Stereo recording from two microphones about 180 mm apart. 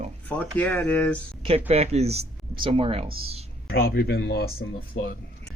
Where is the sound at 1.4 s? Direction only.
35° right (ahead or behind).